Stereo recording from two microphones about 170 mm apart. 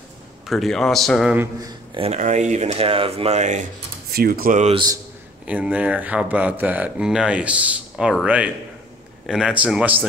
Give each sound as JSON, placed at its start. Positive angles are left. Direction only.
{"t": 0.5, "sound": "speech", "side_deg": 0}
{"t": 1.3, "sound": "speech", "side_deg": -15}
{"t": 1.7, "sound": "speech", "side_deg": -35}
{"t": 4.1, "sound": "speech", "side_deg": -60}
{"t": 5.4, "sound": "speech", "side_deg": -10}